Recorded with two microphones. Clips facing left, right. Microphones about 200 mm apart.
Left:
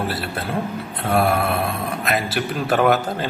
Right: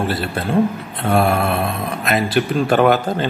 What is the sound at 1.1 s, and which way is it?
Mantra, 25° right (ahead or behind).